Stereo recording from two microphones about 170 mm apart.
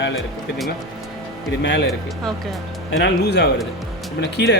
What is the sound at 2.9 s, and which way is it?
A man's voice, 85° left.